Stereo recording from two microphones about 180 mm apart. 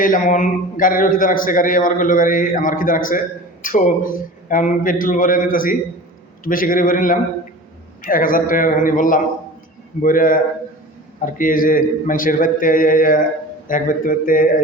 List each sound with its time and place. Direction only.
0.0 s a man's voice: 45° left (ahead or behind)